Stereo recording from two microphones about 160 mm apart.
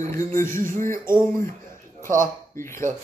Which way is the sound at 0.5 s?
55° right (ahead or behind).